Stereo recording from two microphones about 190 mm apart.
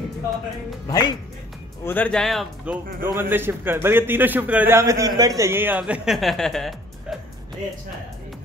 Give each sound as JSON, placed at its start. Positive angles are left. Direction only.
{"t": 0.8, "sound": "speech", "side_deg": 20}
{"t": 1.9, "sound": "speech", "side_deg": 5}